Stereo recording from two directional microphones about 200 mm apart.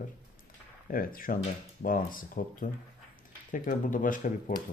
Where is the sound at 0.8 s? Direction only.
45° left (ahead or behind).